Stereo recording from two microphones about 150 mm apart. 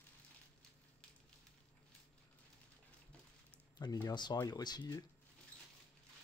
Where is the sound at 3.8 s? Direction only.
25° left (ahead or behind).